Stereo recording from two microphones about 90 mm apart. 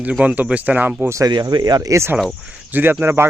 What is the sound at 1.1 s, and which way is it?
Speech, 45° right (ahead or behind).